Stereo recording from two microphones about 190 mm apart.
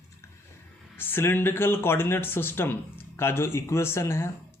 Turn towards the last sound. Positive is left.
turn(degrees=15)  # may be behind; listen again after turning